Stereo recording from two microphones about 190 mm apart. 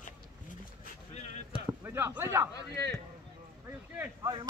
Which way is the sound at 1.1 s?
35° left (ahead or behind).